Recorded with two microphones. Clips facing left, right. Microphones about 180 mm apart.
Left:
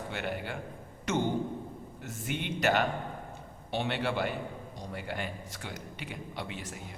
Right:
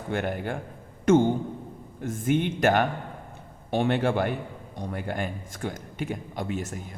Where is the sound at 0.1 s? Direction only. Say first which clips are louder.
Right 9 dB; 50° right (ahead or behind).